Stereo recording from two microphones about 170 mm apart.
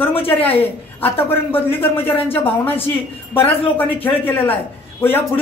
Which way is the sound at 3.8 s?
30° left (ahead or behind).